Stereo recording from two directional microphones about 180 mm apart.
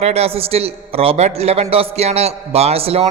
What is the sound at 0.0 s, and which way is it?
A man's voice, 35° right (ahead or behind).